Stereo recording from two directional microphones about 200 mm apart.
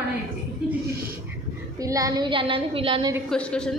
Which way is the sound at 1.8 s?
15° right (ahead or behind).